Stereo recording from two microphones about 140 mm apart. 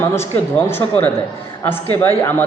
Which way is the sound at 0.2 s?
15° left (ahead or behind).